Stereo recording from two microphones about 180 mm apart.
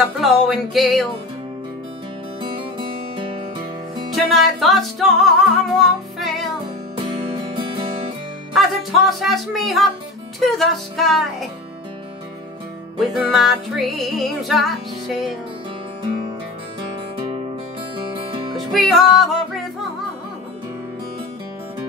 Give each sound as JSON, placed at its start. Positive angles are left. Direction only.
{"t": 0.0, "sound": "music", "side_deg": 0}
{"t": 4.1, "sound": "music", "side_deg": 0}
{"t": 7.1, "sound": "music", "side_deg": -30}
{"t": 8.5, "sound": "music", "side_deg": 0}
{"t": 13.0, "sound": "music", "side_deg": 0}
{"t": 18.1, "sound": "music", "side_deg": -25}
{"t": 18.7, "sound": "music", "side_deg": 0}